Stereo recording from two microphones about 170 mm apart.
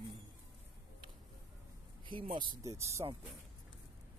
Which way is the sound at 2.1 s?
30° right (ahead or behind).